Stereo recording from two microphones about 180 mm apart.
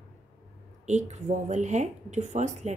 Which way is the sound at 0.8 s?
40° right (ahead or behind).